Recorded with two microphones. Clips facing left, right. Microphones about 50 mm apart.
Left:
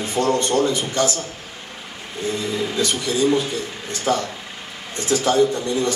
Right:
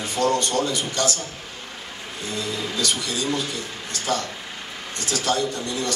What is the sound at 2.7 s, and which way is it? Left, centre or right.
A man's voice, left.